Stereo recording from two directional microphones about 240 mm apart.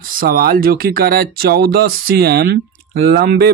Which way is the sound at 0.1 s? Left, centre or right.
Right.